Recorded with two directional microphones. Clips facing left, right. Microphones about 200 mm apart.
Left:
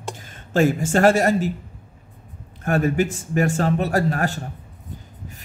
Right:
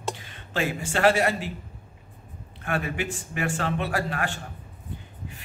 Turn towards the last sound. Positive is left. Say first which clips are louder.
# left 7 dB
turn(degrees=40)  # may be behind; listen again after turning